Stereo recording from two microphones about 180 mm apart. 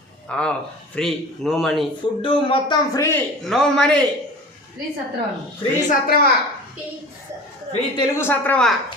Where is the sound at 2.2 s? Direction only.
30° left (ahead or behind).